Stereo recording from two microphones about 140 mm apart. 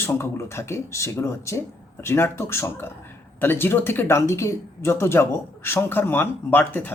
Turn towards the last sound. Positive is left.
turn(degrees=15)  # may be behind; listen again after turning